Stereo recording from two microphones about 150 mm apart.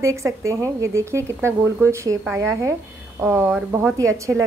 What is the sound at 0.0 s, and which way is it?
A woman's voice, 20° right (ahead or behind).